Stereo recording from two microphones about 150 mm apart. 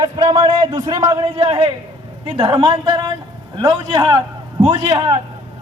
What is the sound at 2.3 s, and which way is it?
A man's voice, 30° right (ahead or behind).